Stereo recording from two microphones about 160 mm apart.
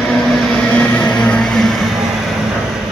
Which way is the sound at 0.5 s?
5° left (ahead or behind).